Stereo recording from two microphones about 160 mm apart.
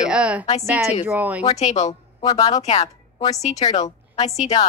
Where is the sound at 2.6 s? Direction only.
45° left (ahead or behind).